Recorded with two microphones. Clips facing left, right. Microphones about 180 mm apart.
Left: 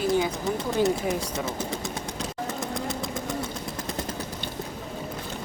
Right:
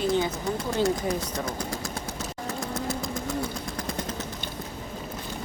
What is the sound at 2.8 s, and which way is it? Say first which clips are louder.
Motorcycle: even; centre (ahead or behind).